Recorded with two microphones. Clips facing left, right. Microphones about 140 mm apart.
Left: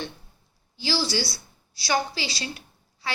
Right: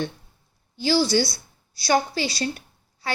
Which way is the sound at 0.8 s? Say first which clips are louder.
Right 7 dB; 50° right (ahead or behind).